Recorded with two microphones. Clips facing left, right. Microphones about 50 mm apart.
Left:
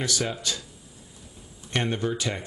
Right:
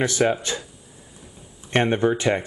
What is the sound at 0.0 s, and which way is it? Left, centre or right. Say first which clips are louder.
Speech: right 8 dB; right.